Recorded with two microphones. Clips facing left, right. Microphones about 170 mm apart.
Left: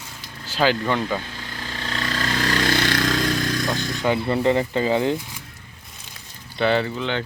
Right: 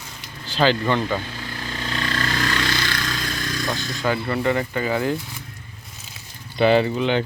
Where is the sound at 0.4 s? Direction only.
10° left (ahead or behind).